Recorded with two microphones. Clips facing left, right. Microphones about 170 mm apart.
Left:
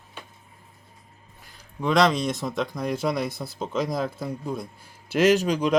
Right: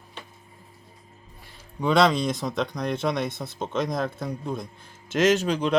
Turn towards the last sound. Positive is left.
turn(degrees=10)  # may be behind; listen again after turning